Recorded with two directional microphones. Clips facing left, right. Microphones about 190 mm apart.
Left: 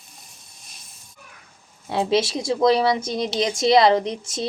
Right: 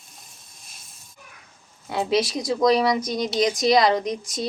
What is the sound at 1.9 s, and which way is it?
Speech, 30° left (ahead or behind).